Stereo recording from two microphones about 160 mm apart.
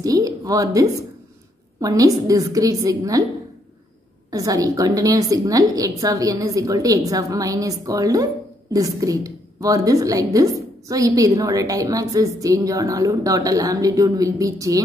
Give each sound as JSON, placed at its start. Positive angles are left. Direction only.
{"t": 0.0, "sound": "a woman's voice", "side_deg": -20}
{"t": 4.3, "sound": "a woman's voice", "side_deg": -20}